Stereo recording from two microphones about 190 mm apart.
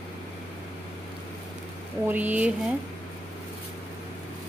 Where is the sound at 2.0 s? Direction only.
10° right (ahead or behind).